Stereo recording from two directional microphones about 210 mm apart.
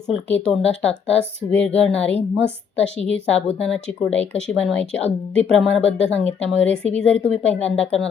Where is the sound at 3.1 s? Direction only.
5° left (ahead or behind).